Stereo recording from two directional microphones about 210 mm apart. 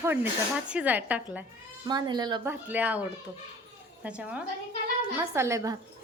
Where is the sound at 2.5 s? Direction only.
10° right (ahead or behind).